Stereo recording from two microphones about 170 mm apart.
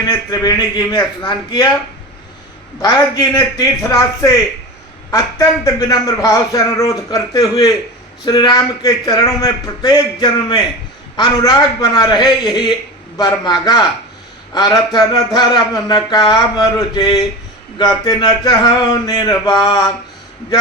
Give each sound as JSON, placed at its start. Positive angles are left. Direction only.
{"t": 0.1, "sound": "a man's voice", "side_deg": 20}
{"t": 2.8, "sound": "a man's voice", "side_deg": 20}
{"t": 11.9, "sound": "a man's voice", "side_deg": 25}